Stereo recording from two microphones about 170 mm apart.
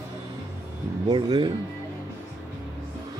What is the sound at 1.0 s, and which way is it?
Speech, 25° right (ahead or behind).